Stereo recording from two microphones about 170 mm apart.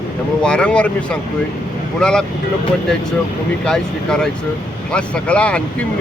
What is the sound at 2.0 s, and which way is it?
Speech, 5° left (ahead or behind).